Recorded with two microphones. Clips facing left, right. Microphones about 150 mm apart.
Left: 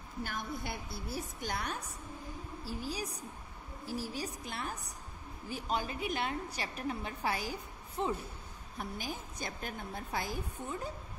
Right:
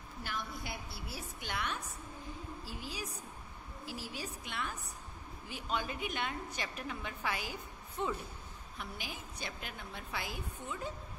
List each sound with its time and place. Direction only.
0.2 s a woman's voice: 50° left (ahead or behind)
2.8 s a woman's voice: 40° left (ahead or behind)